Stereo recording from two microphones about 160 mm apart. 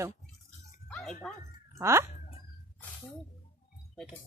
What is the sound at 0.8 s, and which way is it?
Dog, 5° left (ahead or behind).